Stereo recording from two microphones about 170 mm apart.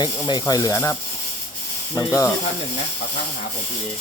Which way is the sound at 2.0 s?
20° left (ahead or behind).